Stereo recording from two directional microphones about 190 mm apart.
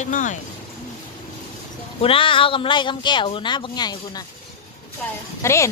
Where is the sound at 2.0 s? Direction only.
30° left (ahead or behind).